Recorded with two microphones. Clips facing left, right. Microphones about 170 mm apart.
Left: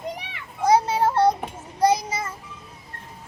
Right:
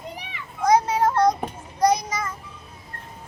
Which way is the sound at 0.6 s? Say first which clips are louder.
Even; 30° left (ahead or behind).